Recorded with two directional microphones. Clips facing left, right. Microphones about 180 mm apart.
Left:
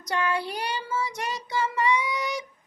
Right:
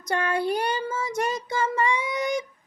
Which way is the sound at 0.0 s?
50° right (ahead or behind).